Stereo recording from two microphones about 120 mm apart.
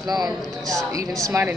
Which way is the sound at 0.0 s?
35° right (ahead or behind).